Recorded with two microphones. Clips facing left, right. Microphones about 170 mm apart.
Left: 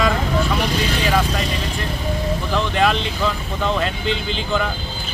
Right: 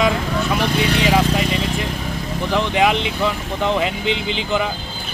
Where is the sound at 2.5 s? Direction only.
15° right (ahead or behind).